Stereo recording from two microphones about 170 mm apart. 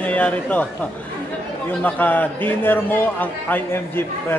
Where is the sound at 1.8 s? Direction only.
10° left (ahead or behind).